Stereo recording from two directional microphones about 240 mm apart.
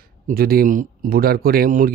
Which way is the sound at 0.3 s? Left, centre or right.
Right.